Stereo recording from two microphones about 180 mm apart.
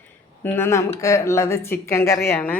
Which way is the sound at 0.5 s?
15° left (ahead or behind).